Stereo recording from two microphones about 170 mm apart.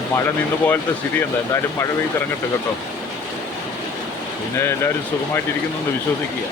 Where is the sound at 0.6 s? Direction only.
10° left (ahead or behind).